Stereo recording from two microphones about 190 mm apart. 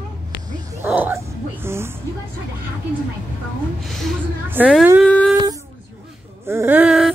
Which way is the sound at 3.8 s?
Centre (ahead or behind).